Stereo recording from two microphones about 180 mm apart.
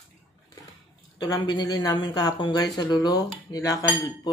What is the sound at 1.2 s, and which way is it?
Speech, 20° left (ahead or behind).